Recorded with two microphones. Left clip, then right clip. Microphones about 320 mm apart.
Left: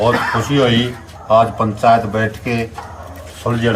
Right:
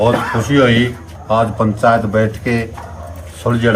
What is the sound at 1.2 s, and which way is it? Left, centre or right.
A man's voice, centre.